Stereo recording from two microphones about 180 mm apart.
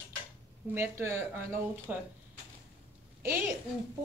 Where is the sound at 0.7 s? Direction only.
10° right (ahead or behind).